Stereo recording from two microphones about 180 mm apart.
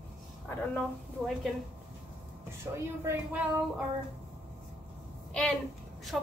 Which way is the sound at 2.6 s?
15° right (ahead or behind).